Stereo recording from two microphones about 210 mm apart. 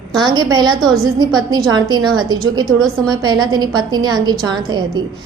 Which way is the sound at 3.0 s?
20° right (ahead or behind).